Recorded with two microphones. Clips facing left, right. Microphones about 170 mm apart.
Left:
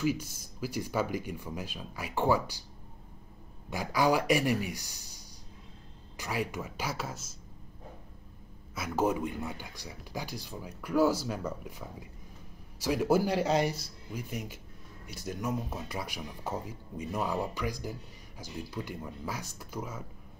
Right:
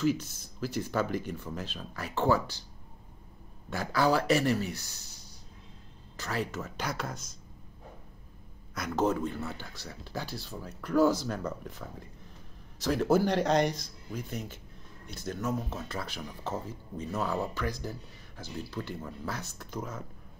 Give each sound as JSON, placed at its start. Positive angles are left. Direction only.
{"t": 0.0, "sound": "speech", "side_deg": 10}
{"t": 3.7, "sound": "speech", "side_deg": 10}
{"t": 8.7, "sound": "speech", "side_deg": 10}